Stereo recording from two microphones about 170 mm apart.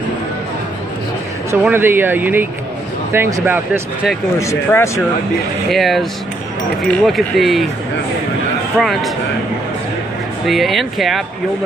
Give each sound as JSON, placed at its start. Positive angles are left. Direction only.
{"t": 1.6, "sound": "speech", "side_deg": -10}
{"t": 4.4, "sound": "speech", "side_deg": 15}
{"t": 5.7, "sound": "speech", "side_deg": 0}
{"t": 8.7, "sound": "speech", "side_deg": 0}
{"t": 10.4, "sound": "speech", "side_deg": 0}